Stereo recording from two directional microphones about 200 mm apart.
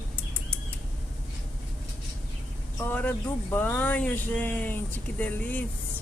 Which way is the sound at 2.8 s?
10° left (ahead or behind).